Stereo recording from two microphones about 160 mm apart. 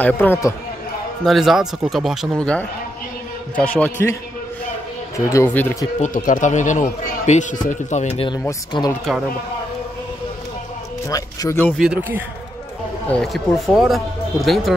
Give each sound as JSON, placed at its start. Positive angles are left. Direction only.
{"t": 0.0, "sound": "speech", "side_deg": 10}
{"t": 1.2, "sound": "speech", "side_deg": 0}
{"t": 5.1, "sound": "speech", "side_deg": 20}
{"t": 5.9, "sound": "speech", "side_deg": 50}
{"t": 8.3, "sound": "speech", "side_deg": 25}
{"t": 11.1, "sound": "speech", "side_deg": 20}
{"t": 11.8, "sound": "speech", "side_deg": -10}
{"t": 13.1, "sound": "speech", "side_deg": 0}